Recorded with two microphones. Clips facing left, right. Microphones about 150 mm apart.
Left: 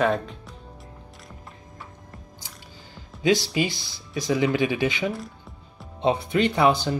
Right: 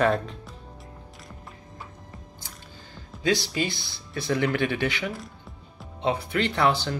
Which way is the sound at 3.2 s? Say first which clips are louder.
Left 3 dB; 15° left (ahead or behind).